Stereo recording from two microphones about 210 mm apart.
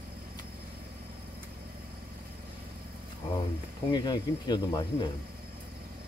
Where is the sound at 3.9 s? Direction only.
20° left (ahead or behind).